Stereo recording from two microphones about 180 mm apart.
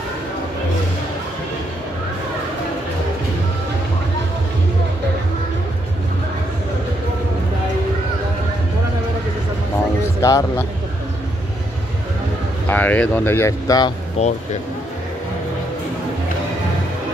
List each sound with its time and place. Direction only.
10.2 s speech: 15° left (ahead or behind)
12.6 s speech: 10° left (ahead or behind)
14.2 s speech: 35° left (ahead or behind)